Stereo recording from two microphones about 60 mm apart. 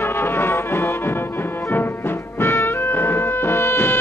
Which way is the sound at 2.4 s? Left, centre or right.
Left.